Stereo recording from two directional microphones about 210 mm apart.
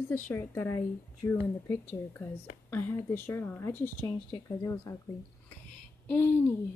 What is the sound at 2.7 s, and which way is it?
Speech, 10° left (ahead or behind).